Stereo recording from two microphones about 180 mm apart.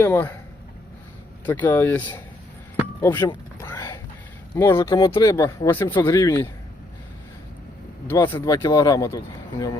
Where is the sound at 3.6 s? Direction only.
15° left (ahead or behind).